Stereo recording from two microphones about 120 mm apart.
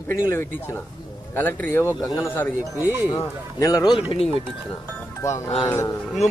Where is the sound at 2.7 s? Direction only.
20° right (ahead or behind).